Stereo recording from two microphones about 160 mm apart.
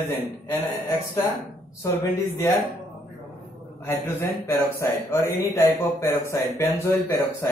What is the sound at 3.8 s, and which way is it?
Speech, 15° left (ahead or behind).